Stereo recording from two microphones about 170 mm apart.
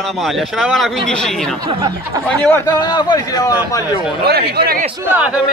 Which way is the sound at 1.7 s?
25° right (ahead or behind).